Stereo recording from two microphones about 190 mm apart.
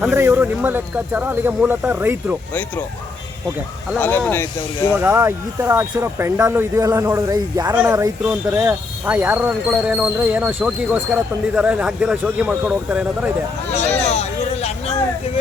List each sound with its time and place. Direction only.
0.0 s speech: 10° right (ahead or behind)
3.9 s speech: 10° left (ahead or behind)
4.9 s speech: 10° right (ahead or behind)
14.0 s a sound: 35° left (ahead or behind)